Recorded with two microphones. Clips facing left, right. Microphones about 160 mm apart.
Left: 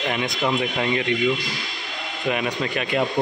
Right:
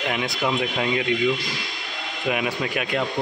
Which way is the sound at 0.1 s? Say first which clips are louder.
Left 1 dB; centre (ahead or behind).